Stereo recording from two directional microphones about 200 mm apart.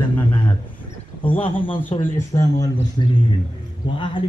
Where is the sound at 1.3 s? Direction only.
25° left (ahead or behind).